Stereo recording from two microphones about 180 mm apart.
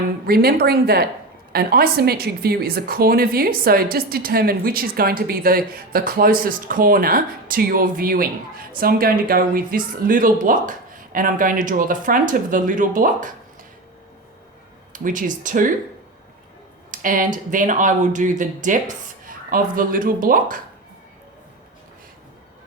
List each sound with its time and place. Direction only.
0.3 s a woman's voice: 60° right (ahead or behind)
14.9 s speech: 45° right (ahead or behind)
16.9 s speech: 50° right (ahead or behind)